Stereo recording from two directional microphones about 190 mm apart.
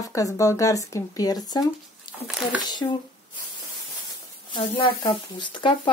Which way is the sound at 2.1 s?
25° left (ahead or behind).